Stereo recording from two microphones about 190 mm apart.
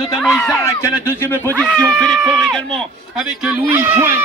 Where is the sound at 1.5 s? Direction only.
5° left (ahead or behind).